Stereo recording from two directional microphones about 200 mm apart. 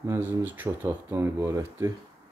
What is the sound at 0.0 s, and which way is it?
Speech, 15° right (ahead or behind).